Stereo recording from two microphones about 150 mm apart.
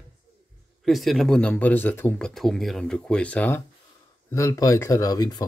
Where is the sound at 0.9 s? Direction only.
Centre (ahead or behind).